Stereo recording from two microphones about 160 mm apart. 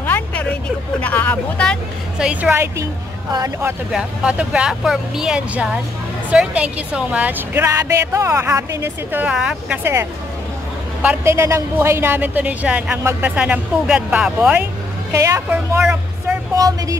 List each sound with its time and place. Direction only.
0.0 s vehicle: 10° left (ahead or behind)
1.0 s speech: 10° left (ahead or behind)
2.1 s speech: 5° right (ahead or behind); by 3.7 s 20° right (ahead or behind)
3.9 s speech: 5° right (ahead or behind)
11.0 s speech: 15° right (ahead or behind)
15.1 s a woman's voice: 20° right (ahead or behind)